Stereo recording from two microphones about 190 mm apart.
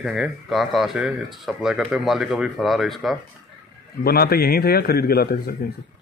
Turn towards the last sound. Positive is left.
turn(degrees=55)  # may be behind; listen again after turning